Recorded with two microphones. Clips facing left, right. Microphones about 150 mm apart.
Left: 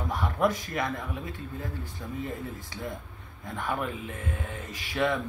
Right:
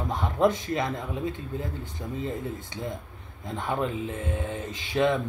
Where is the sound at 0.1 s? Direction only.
20° right (ahead or behind).